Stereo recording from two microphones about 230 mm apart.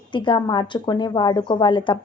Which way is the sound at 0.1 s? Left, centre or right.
Left.